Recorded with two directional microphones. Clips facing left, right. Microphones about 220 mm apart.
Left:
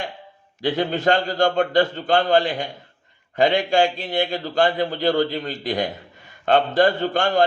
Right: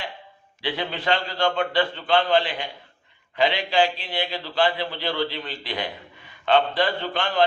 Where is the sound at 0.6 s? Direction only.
45° left (ahead or behind).